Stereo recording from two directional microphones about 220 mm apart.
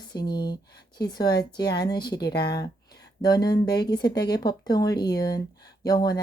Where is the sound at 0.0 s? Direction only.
20° left (ahead or behind).